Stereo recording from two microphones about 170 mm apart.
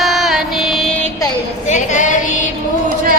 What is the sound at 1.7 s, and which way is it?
Female singing, 45° left (ahead or behind).